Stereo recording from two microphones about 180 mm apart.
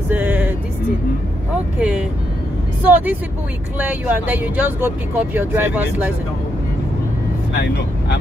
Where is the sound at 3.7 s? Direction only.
10° right (ahead or behind).